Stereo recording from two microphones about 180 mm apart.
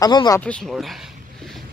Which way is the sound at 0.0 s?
20° left (ahead or behind).